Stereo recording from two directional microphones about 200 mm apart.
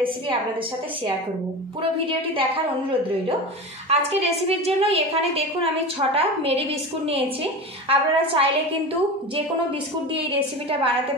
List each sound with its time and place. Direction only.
1.8 s a woman's voice: 25° right (ahead or behind)
3.9 s a woman's voice: 30° right (ahead or behind)
7.9 s a woman's voice: 30° right (ahead or behind)
10.1 s a woman's voice: 30° right (ahead or behind)